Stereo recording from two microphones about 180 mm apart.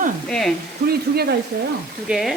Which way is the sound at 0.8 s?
60° right (ahead or behind).